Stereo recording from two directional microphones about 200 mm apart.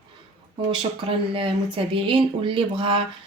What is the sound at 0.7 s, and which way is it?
Speech, 25° right (ahead or behind).